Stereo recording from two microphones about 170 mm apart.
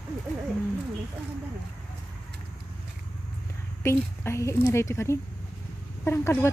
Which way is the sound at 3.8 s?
15° left (ahead or behind).